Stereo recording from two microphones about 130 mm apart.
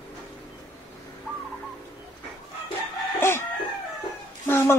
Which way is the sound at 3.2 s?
20° left (ahead or behind).